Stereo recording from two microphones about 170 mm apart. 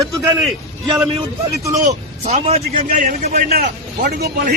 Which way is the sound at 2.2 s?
35° right (ahead or behind).